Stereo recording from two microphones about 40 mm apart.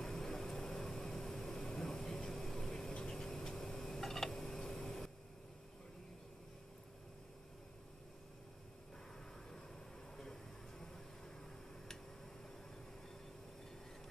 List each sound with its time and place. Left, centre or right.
0.0 s vehicle: centre
2.2 s a sound: centre
10.1 s vehicle: centre